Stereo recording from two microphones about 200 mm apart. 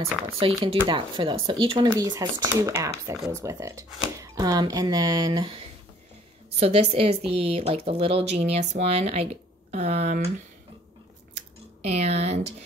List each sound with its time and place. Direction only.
0.4 s speech: 30° right (ahead or behind)
6.6 s a woman's voice: 30° right (ahead or behind)
11.3 s squish: 35° right (ahead or behind)